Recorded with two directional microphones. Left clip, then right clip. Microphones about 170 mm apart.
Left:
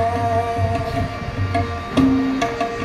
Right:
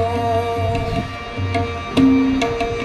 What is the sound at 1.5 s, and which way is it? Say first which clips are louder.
Music: right 1 dB; 35° right (ahead or behind).